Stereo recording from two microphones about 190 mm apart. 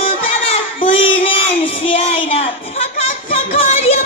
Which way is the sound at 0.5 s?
30° left (ahead or behind).